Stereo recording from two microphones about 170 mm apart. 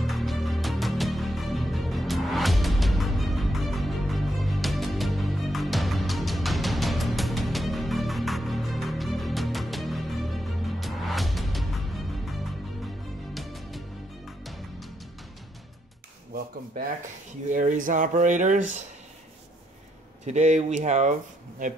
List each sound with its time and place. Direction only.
0.0 s music: centre (ahead or behind)
17.5 s speech: 50° right (ahead or behind)
20.2 s speech: 40° right (ahead or behind)